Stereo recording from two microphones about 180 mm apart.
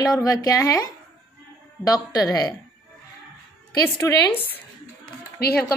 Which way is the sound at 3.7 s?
10° left (ahead or behind).